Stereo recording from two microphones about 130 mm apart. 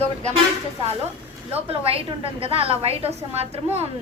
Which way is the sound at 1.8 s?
45° right (ahead or behind).